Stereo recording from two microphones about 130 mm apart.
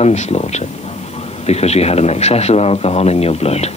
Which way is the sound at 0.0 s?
60° left (ahead or behind).